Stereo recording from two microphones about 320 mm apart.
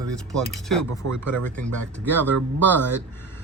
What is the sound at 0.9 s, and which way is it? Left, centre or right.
Speech, right.